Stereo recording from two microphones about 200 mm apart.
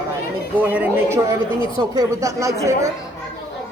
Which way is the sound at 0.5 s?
10° right (ahead or behind).